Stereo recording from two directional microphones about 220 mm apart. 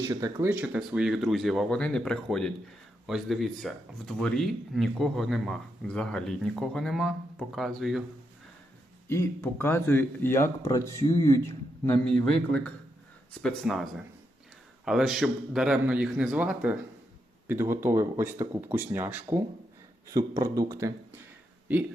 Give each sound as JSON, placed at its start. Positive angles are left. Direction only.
{"t": 0.1, "sound": "speech", "side_deg": -15}
{"t": 9.0, "sound": "speech", "side_deg": 10}
{"t": 14.8, "sound": "speech", "side_deg": 0}